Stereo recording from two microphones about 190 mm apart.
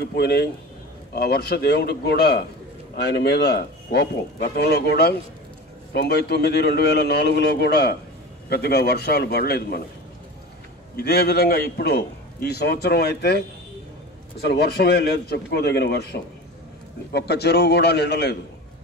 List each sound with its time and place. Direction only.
0.0 s a man's voice: 60° left (ahead or behind)
11.0 s a man's voice: 55° left (ahead or behind)
14.5 s a man's voice: 60° left (ahead or behind)